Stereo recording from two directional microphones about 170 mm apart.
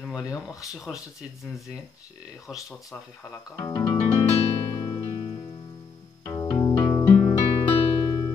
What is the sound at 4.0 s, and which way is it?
Music, 40° left (ahead or behind).